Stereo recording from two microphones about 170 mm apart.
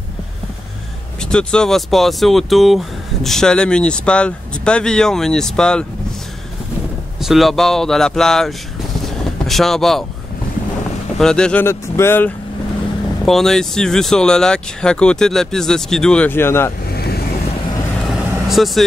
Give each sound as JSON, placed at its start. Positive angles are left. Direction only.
{"t": 1.3, "sound": "speech", "side_deg": 5}
{"t": 7.2, "sound": "speech", "side_deg": 0}
{"t": 9.0, "sound": "vehicle", "side_deg": 0}
{"t": 11.1, "sound": "speech", "side_deg": 5}
{"t": 13.2, "sound": "speech", "side_deg": 0}
{"t": 16.9, "sound": "vehicle", "side_deg": 70}
{"t": 18.0, "sound": "vehicle", "side_deg": 0}